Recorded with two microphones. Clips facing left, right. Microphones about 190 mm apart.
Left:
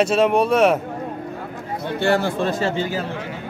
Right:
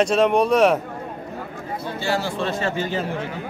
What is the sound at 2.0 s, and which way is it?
Speech, 55° left (ahead or behind).